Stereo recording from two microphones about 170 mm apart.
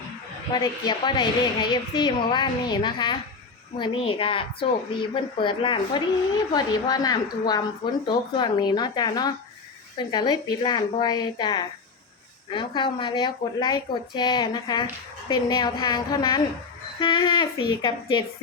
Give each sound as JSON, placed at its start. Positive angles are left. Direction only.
{"t": 0.6, "sound": "a woman's voice", "side_deg": 25}